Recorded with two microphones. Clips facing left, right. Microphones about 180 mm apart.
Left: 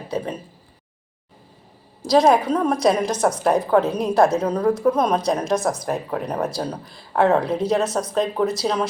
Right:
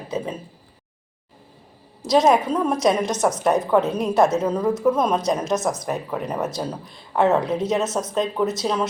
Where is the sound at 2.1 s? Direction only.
Centre (ahead or behind).